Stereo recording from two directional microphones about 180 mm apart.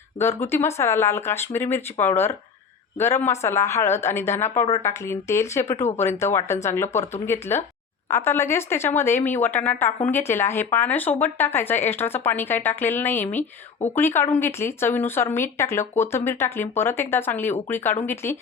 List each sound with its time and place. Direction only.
0.2 s speech: 15° left (ahead or behind)